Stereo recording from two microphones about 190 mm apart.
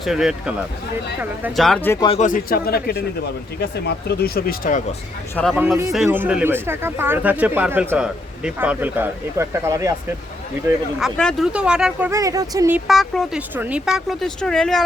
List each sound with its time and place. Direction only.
0.0 s speech: centre (ahead or behind)
1.6 s speech: 5° left (ahead or behind)
2.0 s speech: 40° left (ahead or behind)
5.3 s speech: 5° left (ahead or behind)
5.5 s speech: 10° right (ahead or behind)
11.0 s speech: centre (ahead or behind)
12.2 s speech: 20° right (ahead or behind)
12.9 s speech: centre (ahead or behind)